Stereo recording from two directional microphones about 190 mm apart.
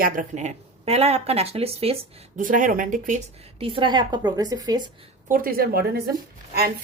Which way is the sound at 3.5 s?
25° right (ahead or behind).